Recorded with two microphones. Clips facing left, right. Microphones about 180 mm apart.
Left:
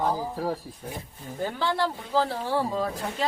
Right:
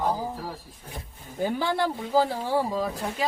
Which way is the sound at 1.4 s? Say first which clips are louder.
Right 2 dB; 15° right (ahead or behind).